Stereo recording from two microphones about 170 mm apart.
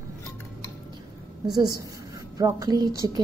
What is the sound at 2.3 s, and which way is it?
Speech, 20° right (ahead or behind).